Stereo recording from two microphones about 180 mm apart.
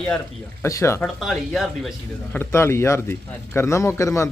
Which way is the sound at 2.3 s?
15° left (ahead or behind).